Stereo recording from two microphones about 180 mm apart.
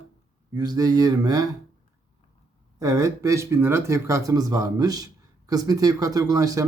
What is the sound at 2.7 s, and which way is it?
Speech, 20° right (ahead or behind).